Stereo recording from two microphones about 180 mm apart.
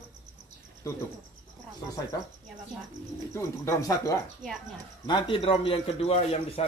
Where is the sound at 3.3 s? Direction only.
15° left (ahead or behind); by 6.6 s 35° left (ahead or behind).